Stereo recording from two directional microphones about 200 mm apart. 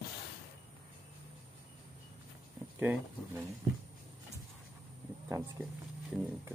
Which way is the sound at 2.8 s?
10° right (ahead or behind).